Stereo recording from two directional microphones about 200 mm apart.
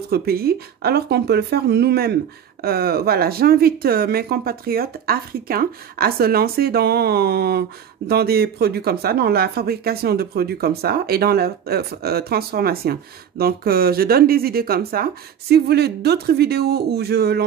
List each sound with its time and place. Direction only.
0.1 s speech: 50° right (ahead or behind)